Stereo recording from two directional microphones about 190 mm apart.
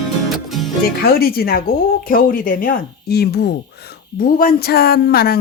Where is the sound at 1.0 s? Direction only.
55° left (ahead or behind).